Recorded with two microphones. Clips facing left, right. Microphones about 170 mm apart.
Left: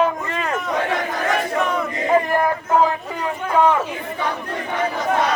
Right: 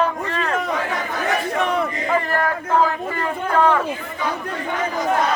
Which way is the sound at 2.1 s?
15° left (ahead or behind).